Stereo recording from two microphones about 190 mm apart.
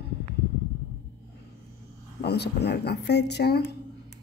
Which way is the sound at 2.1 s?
60° left (ahead or behind).